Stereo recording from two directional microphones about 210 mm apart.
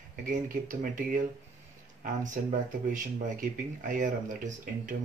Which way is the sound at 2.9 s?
40° right (ahead or behind).